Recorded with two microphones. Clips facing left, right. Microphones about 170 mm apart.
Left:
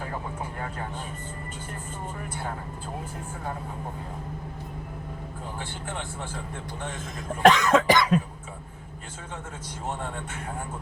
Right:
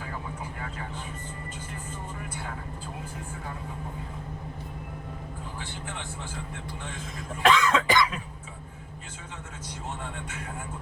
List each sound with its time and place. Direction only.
7.4 s cough: 45° left (ahead or behind)